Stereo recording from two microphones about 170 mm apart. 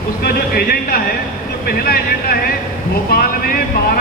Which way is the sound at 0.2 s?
60° left (ahead or behind).